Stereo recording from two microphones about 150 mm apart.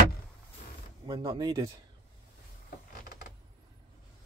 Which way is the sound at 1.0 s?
30° right (ahead or behind).